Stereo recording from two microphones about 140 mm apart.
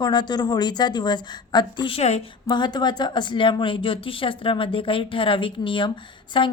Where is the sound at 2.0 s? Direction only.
50° left (ahead or behind).